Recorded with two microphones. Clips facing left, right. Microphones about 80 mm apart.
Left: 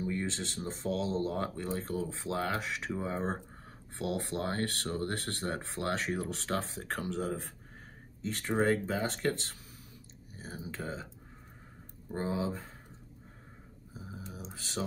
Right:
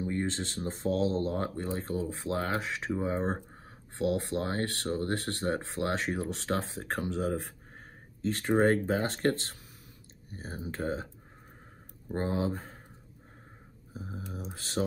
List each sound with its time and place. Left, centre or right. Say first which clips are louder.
0.0 s speech: right 3 dB; right
2.9 s speech: right 5 dB; right
7.2 s speech: right 4 dB; right
12.1 s speech: right 3 dB; right
13.9 s speech: right 5 dB; centre